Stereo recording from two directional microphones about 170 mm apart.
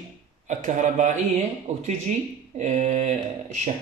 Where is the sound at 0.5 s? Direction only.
45° right (ahead or behind).